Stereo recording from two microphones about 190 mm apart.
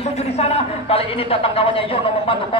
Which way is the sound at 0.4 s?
30° left (ahead or behind).